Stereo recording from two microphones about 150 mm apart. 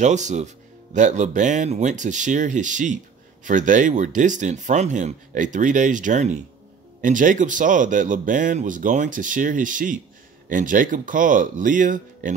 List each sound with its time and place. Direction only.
0.0 s speech: 50° right (ahead or behind)